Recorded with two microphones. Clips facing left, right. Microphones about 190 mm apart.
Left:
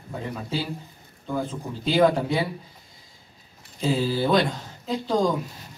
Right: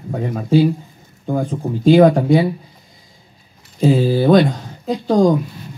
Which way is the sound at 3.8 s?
50° right (ahead or behind).